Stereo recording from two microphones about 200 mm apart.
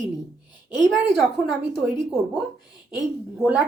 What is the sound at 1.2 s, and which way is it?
Speech, centre (ahead or behind).